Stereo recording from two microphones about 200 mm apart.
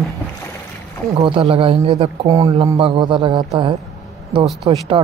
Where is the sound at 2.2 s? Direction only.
15° right (ahead or behind).